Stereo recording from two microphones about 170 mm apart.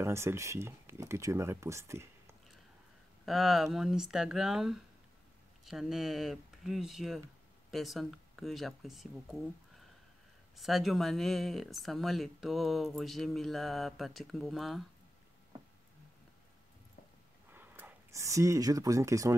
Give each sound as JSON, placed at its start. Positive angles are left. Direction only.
{"t": 0.0, "sound": "speech", "side_deg": -15}
{"t": 3.3, "sound": "speech", "side_deg": 0}
{"t": 10.6, "sound": "speech", "side_deg": 0}
{"t": 17.5, "sound": "speech", "side_deg": -10}